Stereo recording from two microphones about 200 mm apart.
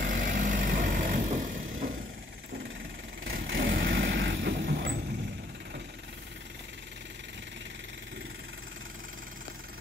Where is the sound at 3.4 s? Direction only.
65° right (ahead or behind).